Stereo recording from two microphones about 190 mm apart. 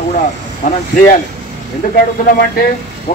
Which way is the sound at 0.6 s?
40° left (ahead or behind).